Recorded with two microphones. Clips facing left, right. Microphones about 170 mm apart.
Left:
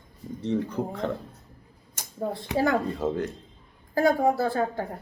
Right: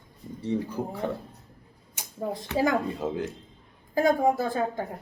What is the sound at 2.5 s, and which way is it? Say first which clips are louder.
Speech: left 1 dB; 10° right (ahead or behind).